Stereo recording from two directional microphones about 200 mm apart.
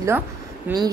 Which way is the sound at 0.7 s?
10° right (ahead or behind).